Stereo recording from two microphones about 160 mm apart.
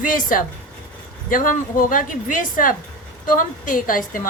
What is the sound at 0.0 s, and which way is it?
Speech, 55° left (ahead or behind).